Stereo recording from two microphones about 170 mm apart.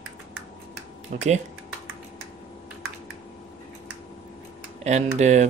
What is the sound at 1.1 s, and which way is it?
Speech, 40° right (ahead or behind).